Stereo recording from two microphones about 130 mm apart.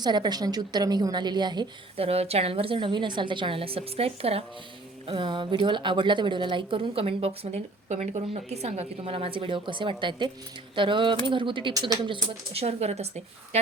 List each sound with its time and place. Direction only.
0.0 s a woman's voice: 35° right (ahead or behind)
2.0 s a woman's voice: 50° right (ahead or behind)
12.6 s a woman's voice: 55° right (ahead or behind)